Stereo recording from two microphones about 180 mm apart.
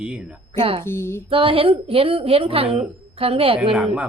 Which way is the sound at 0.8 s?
15° left (ahead or behind).